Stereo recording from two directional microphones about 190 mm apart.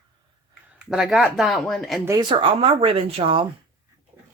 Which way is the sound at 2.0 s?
20° right (ahead or behind).